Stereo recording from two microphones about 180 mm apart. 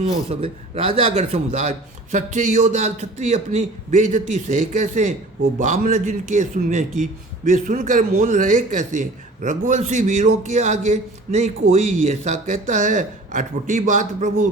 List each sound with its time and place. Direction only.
0.0 s a man's voice: 35° right (ahead or behind)